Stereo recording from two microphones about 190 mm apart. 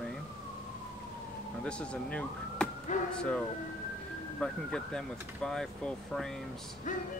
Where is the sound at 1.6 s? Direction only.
5° left (ahead or behind).